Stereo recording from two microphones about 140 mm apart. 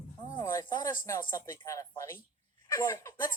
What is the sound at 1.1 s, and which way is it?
Speech, 20° left (ahead or behind).